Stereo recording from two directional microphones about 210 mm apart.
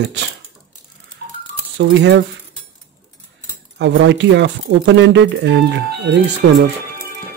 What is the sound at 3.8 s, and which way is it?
Speech, 55° right (ahead or behind).